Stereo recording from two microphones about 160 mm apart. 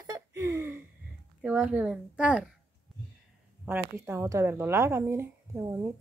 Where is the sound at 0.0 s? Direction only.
20° right (ahead or behind).